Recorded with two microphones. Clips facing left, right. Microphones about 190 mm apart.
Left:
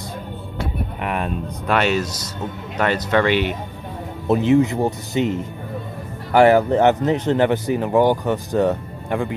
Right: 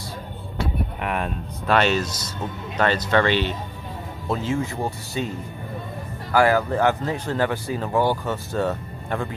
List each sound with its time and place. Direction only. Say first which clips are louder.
1.7 s speech: left 1 dB; 10° left (ahead or behind)
6.3 s speech: left 6 dB; 25° left (ahead or behind)